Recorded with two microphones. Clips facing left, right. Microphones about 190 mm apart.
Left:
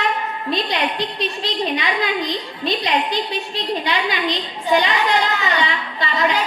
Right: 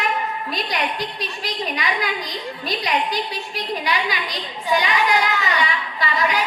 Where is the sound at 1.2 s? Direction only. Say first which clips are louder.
Left 5 dB; 25° left (ahead or behind).